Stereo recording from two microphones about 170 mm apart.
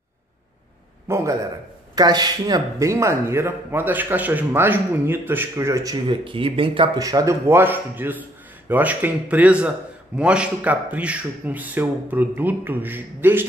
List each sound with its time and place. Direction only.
1.0 s a man's voice: 15° right (ahead or behind)